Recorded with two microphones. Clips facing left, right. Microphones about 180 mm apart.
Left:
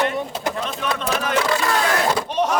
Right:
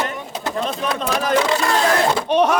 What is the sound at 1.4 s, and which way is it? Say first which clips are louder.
Speech: right 2 dB; 25° right (ahead or behind).